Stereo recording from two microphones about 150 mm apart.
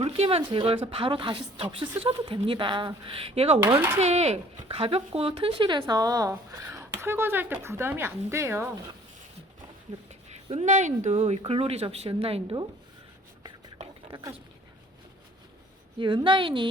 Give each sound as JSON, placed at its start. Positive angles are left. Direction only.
{"t": 0.0, "sound": "speech", "side_deg": -40}
{"t": 3.8, "sound": "speech", "side_deg": -15}
{"t": 4.0, "sound": "speech", "side_deg": -45}
{"t": 10.1, "sound": "speech", "side_deg": -50}
{"t": 14.1, "sound": "speech", "side_deg": -25}
{"t": 16.0, "sound": "speech", "side_deg": -35}